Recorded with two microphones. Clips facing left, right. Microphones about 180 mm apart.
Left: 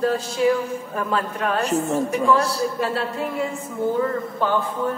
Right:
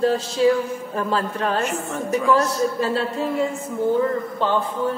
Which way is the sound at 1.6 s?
35° left (ahead or behind).